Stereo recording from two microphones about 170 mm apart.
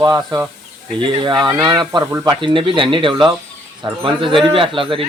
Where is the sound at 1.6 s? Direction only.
25° right (ahead or behind).